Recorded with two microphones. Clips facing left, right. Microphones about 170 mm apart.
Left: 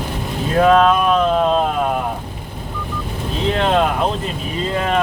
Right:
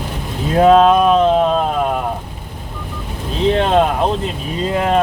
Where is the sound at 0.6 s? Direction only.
25° right (ahead or behind).